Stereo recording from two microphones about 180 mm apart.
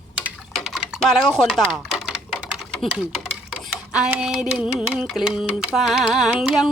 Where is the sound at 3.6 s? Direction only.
5° right (ahead or behind).